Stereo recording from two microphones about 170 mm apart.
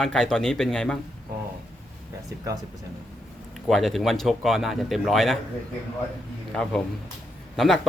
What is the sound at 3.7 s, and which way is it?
Speech, centre (ahead or behind).